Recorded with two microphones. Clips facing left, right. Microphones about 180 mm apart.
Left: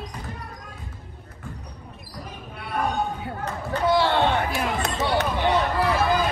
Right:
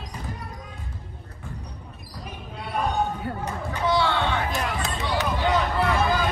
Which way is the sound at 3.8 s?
60° left (ahead or behind).